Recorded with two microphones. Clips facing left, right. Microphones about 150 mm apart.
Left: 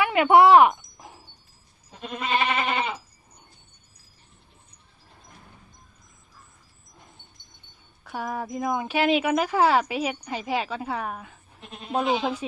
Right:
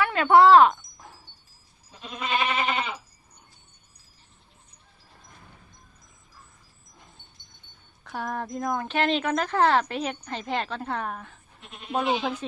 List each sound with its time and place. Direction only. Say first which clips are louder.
0.0 s a sound: left 1 dB; 15° left (ahead or behind)
2.0 s goat: left 2 dB; 55° left (ahead or behind)
8.0 s a woman's voice: left 1 dB; 5° left (ahead or behind)